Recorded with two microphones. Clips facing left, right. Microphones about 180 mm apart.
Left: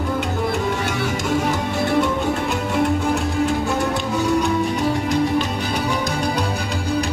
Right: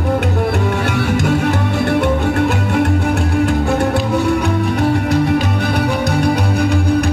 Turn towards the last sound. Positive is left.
turn(degrees=-60)  # may be behind; listen again after turning